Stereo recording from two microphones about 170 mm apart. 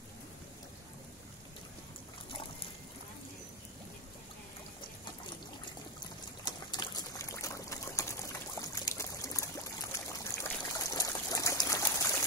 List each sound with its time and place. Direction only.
6.4 s liquid: 25° left (ahead or behind)